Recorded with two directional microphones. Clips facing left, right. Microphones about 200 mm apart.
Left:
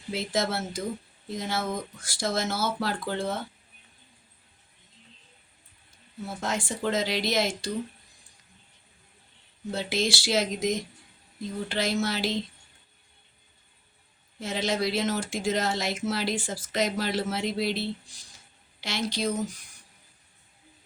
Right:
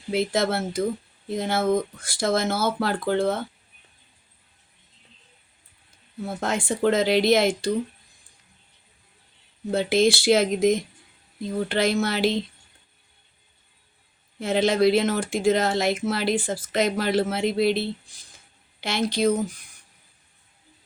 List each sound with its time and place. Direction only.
0.1 s speech: 55° right (ahead or behind)
6.2 s speech: 55° right (ahead or behind)
9.7 s speech: 55° right (ahead or behind)
14.3 s speech: 60° right (ahead or behind)